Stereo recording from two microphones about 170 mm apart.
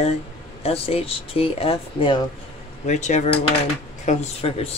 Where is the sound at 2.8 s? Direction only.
45° left (ahead or behind).